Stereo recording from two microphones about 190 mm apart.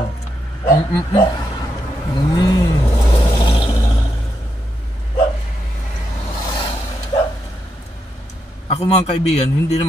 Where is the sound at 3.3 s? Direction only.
25° left (ahead or behind).